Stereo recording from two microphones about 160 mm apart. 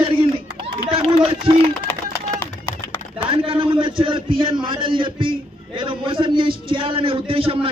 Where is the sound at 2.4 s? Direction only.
15° left (ahead or behind).